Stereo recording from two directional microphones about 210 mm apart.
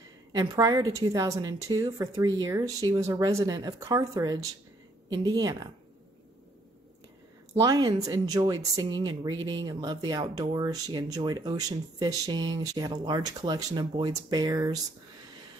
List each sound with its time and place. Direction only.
0.4 s speech: 15° right (ahead or behind)
7.5 s speech: 15° right (ahead or behind)